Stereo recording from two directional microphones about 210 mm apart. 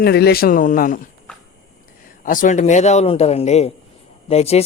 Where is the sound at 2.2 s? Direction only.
40° left (ahead or behind).